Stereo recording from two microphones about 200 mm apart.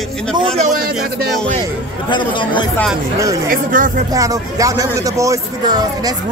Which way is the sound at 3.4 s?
40° right (ahead or behind).